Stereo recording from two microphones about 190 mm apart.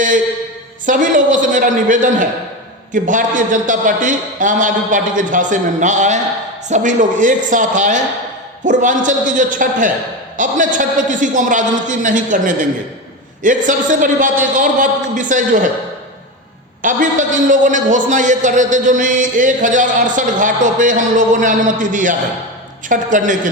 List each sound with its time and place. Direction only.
0.9 s a man's voice: 45° right (ahead or behind)
16.8 s a man's voice: 40° right (ahead or behind)